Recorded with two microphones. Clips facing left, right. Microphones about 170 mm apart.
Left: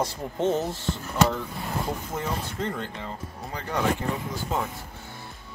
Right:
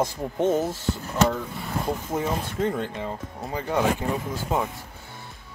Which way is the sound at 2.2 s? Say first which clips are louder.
Right 6 dB; 15° right (ahead or behind).